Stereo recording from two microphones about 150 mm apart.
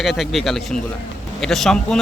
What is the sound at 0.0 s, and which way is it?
Speech, centre (ahead or behind).